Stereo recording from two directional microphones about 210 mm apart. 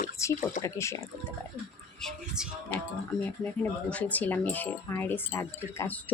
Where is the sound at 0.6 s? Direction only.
15° left (ahead or behind).